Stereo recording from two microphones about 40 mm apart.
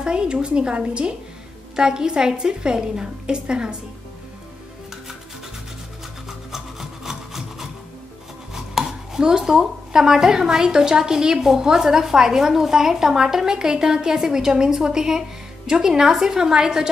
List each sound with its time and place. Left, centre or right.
0.0 s a woman's voice: right
6.2 s rub: centre
8.5 s chopping: centre
9.2 s a woman's voice: centre